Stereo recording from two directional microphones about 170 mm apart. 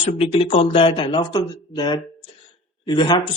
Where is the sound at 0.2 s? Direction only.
35° left (ahead or behind).